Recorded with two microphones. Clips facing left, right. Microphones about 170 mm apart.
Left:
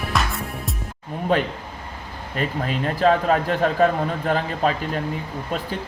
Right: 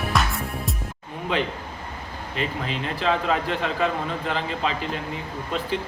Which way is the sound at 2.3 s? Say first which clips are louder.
Left 4 dB; 45° left (ahead or behind).